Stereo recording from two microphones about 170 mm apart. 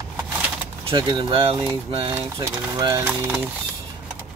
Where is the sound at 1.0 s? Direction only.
25° right (ahead or behind).